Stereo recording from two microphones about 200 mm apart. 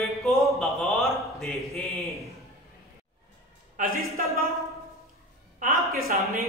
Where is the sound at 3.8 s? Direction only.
40° right (ahead or behind).